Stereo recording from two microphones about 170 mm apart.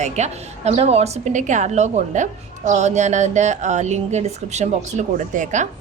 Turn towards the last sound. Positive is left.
turn(degrees=-45)  # may be behind; listen again after turning